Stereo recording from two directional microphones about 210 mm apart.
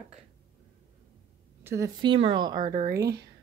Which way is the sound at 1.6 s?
15° right (ahead or behind).